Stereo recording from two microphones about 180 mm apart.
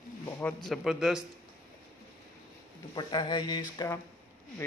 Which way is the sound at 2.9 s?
25° left (ahead or behind).